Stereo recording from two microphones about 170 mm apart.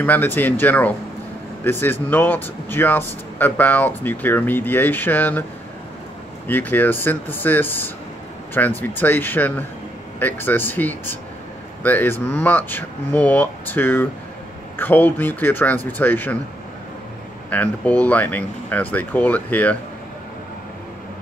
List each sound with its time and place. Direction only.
0.0 s speech: 10° left (ahead or behind)
6.4 s speech: 10° left (ahead or behind)
17.5 s speech: 10° left (ahead or behind)